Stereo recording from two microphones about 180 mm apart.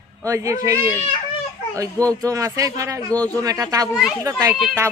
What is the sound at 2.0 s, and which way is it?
A woman's voice, 20° right (ahead or behind).